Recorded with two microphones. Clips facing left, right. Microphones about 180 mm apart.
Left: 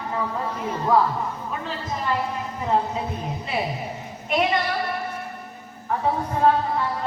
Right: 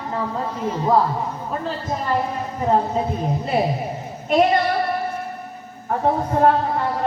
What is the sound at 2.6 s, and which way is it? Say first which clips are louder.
Speech: right 4 dB; 40° right (ahead or behind).